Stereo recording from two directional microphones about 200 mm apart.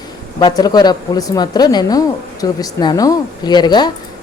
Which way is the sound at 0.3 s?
20° left (ahead or behind).